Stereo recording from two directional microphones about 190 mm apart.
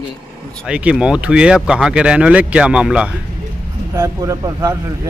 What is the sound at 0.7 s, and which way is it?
Speech, 5° right (ahead or behind).